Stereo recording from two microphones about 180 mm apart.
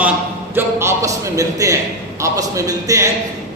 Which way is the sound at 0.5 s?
15° right (ahead or behind).